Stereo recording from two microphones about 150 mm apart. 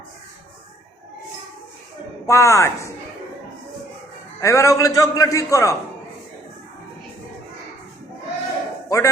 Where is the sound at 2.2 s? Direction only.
20° left (ahead or behind).